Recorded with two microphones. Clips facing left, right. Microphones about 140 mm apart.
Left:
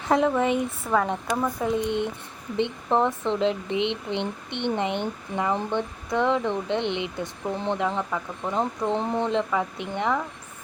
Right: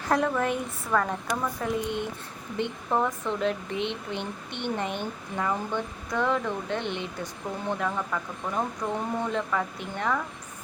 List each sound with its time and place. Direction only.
0.3 s speech: 20° left (ahead or behind)